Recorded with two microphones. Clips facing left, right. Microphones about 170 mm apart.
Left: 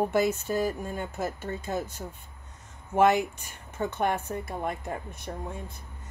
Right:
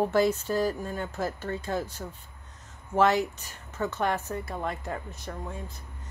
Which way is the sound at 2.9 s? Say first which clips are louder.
Left 1 dB; 15° left (ahead or behind).